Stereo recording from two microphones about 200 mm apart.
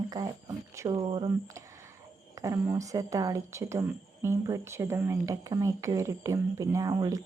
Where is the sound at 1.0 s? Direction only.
25° right (ahead or behind).